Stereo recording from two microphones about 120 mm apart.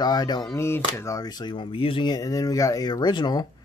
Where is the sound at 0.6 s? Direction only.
20° left (ahead or behind); by 2.1 s 45° left (ahead or behind).